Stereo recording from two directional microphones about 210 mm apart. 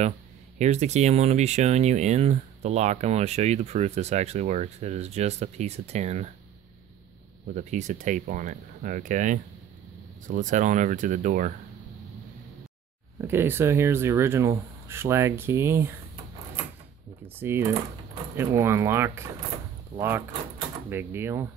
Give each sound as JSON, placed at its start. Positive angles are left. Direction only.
{"t": 0.6, "sound": "speech", "side_deg": -30}
{"t": 7.5, "sound": "speech", "side_deg": -35}
{"t": 13.2, "sound": "speech", "side_deg": -10}
{"t": 17.4, "sound": "speech", "side_deg": -10}